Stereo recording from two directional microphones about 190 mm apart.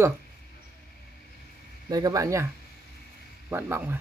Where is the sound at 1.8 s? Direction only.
20° right (ahead or behind).